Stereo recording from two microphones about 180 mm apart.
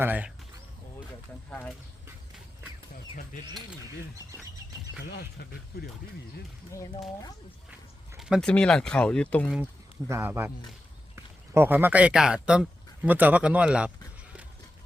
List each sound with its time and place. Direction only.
0.0 s speech: 10° right (ahead or behind)
1.5 s speech: 10° left (ahead or behind)
5.0 s speech: 65° left (ahead or behind)
6.7 s speech: 15° left (ahead or behind)
8.2 s speech: centre (ahead or behind)
10.1 s speech: 15° right (ahead or behind)